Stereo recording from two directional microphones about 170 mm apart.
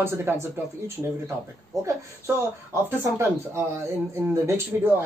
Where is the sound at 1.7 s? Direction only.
20° right (ahead or behind).